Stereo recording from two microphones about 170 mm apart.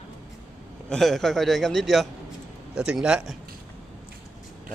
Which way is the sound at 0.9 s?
Centre (ahead or behind).